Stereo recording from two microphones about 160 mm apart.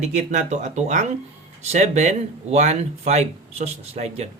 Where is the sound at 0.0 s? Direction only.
50° right (ahead or behind).